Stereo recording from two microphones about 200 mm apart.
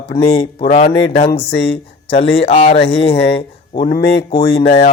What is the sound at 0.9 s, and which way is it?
Speech, 60° left (ahead or behind).